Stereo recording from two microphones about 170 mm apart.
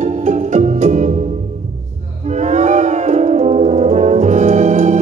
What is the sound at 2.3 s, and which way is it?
Music, 45° right (ahead or behind).